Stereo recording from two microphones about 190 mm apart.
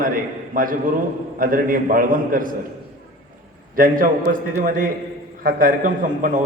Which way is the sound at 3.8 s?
45° right (ahead or behind).